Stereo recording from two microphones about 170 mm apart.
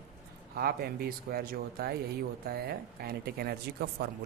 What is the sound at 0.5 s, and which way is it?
Speech, 65° right (ahead or behind).